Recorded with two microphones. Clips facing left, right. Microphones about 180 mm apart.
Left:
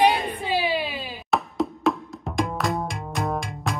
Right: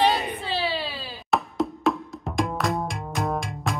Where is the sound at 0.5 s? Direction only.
15° left (ahead or behind).